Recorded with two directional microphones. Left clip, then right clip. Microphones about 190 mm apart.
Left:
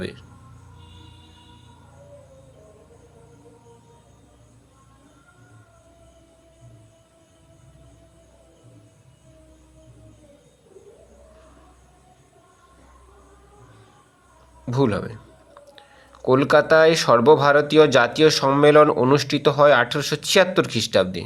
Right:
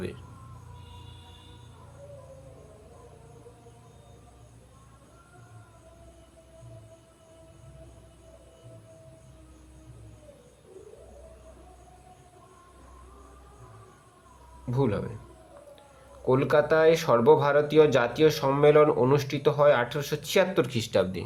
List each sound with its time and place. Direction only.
14.7 s speech: 25° left (ahead or behind)
16.2 s speech: 20° left (ahead or behind)